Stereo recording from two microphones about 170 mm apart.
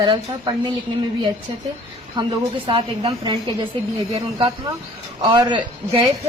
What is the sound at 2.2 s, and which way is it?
A man's voice, 25° right (ahead or behind).